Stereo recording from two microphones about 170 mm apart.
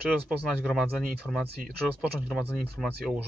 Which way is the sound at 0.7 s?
Centre (ahead or behind).